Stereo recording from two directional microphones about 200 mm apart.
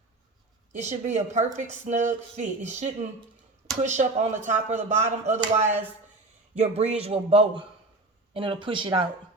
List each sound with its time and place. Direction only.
0.7 s a man's voice: 35° right (ahead or behind)